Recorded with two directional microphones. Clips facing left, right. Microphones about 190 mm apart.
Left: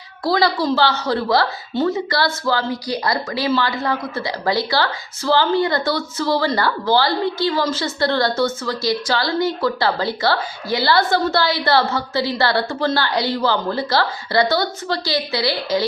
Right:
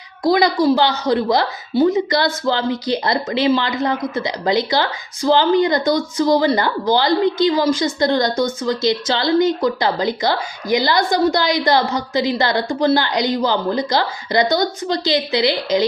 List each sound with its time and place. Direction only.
0.3 s a woman's voice: 15° right (ahead or behind)